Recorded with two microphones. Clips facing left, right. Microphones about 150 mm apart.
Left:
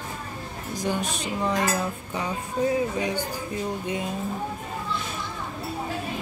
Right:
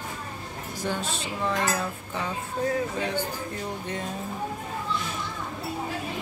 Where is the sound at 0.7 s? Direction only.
15° left (ahead or behind).